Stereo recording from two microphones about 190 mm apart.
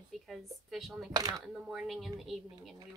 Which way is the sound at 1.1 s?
20° right (ahead or behind).